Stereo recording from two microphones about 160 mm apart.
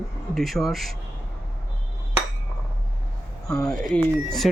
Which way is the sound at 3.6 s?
Centre (ahead or behind).